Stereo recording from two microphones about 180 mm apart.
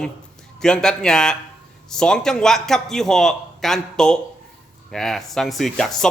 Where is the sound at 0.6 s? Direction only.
5° left (ahead or behind).